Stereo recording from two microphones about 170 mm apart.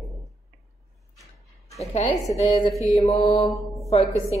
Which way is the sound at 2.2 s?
40° left (ahead or behind).